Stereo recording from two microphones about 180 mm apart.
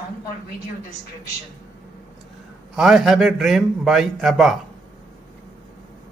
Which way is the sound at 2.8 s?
5° right (ahead or behind).